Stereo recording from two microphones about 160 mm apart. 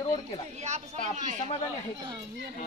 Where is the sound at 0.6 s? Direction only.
45° right (ahead or behind).